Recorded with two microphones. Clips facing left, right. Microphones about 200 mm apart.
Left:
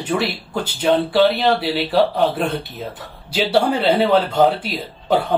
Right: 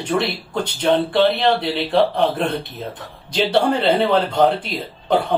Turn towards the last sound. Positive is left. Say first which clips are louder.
# even
turn(degrees=5)  # may be behind; listen again after turning